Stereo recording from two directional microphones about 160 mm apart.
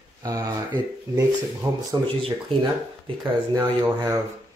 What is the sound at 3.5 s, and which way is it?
Speech, 15° right (ahead or behind).